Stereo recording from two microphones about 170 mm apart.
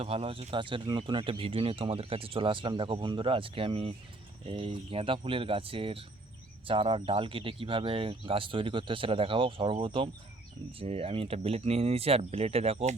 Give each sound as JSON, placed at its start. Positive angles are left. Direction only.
{"t": 0.0, "sound": "speech", "side_deg": -35}